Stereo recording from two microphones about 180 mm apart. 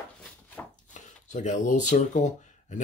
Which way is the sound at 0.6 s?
10° left (ahead or behind).